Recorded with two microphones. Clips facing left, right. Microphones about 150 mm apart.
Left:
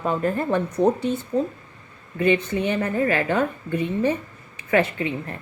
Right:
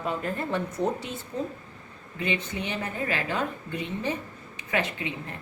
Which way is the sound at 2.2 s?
50° left (ahead or behind).